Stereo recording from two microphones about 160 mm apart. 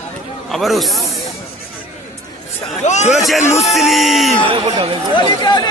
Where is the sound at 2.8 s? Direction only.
45° left (ahead or behind).